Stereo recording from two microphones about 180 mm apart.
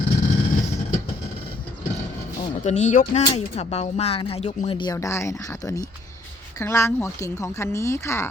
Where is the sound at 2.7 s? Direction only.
40° left (ahead or behind).